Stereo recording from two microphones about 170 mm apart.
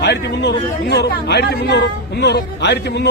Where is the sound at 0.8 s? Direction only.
70° left (ahead or behind).